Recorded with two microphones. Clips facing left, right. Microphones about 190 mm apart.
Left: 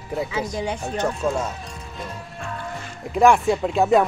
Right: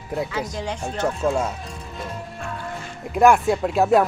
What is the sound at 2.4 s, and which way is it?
Music, centre (ahead or behind).